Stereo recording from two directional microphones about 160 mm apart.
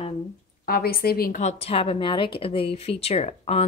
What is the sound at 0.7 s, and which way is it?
Speech, 70° left (ahead or behind).